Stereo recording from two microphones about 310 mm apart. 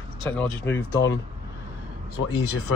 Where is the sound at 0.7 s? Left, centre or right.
Left.